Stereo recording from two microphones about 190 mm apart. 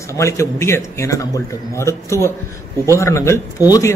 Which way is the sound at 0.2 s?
15° left (ahead or behind).